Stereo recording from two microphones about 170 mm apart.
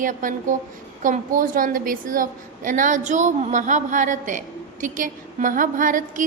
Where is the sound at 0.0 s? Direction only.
50° right (ahead or behind).